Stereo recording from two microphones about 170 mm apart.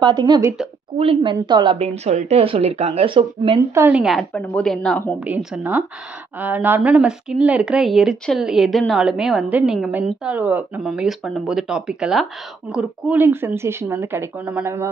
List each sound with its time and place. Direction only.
0.0 s a woman's voice: 25° right (ahead or behind)
3.7 s a woman's voice: 10° right (ahead or behind)